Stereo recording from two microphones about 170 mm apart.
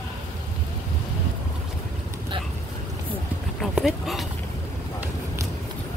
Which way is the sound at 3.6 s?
Centre (ahead or behind).